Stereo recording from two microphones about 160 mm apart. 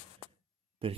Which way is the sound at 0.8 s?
35° right (ahead or behind).